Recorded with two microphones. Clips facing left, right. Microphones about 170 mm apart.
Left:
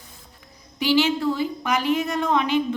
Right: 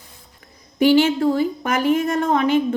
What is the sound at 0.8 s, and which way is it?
Speech, 50° right (ahead or behind).